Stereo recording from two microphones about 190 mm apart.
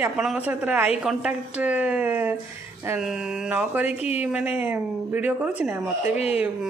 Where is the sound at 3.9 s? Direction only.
35° left (ahead or behind).